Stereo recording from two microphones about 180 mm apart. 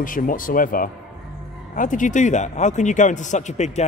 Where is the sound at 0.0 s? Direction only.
50° left (ahead or behind).